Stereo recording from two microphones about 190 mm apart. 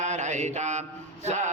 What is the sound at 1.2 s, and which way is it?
Music, 40° right (ahead or behind).